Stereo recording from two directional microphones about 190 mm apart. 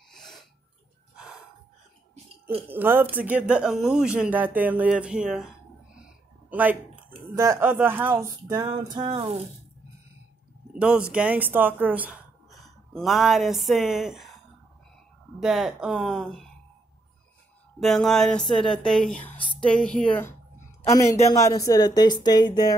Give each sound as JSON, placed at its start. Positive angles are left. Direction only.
{"t": 0.1, "sound": "breathing", "side_deg": 0}
{"t": 1.1, "sound": "a sound", "side_deg": -5}
{"t": 2.7, "sound": "speech", "side_deg": -10}
{"t": 5.9, "sound": "a sound", "side_deg": -5}
{"t": 7.3, "sound": "speech", "side_deg": -15}
{"t": 10.7, "sound": "speech", "side_deg": -5}
{"t": 15.4, "sound": "speech", "side_deg": -5}
{"t": 17.7, "sound": "speech", "side_deg": 0}